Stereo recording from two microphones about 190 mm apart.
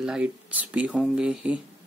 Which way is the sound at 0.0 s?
5° right (ahead or behind).